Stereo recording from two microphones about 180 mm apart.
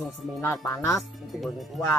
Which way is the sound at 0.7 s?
15° left (ahead or behind).